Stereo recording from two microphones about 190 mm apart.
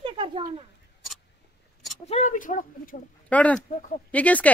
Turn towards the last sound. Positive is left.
turn(degrees=10)  # may be behind; listen again after turning